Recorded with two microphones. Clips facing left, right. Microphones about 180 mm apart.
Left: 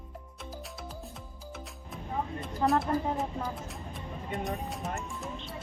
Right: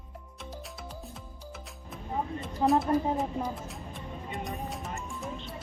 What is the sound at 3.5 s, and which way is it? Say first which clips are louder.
Music: right 1 dB; centre (ahead or behind).